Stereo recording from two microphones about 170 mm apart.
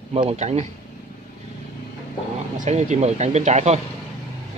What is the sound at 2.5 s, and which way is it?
Speech, 45° right (ahead or behind).